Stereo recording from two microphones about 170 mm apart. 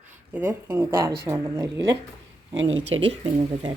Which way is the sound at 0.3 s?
15° right (ahead or behind).